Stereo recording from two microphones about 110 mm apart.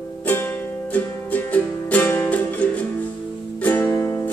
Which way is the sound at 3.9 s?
30° left (ahead or behind).